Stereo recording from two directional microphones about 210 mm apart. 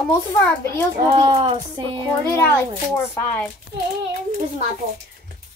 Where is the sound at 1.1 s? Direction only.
20° right (ahead or behind).